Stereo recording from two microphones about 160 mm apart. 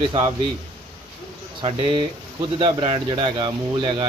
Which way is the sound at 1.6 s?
30° right (ahead or behind).